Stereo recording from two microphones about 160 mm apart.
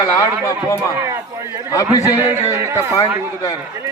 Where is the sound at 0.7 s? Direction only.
20° right (ahead or behind).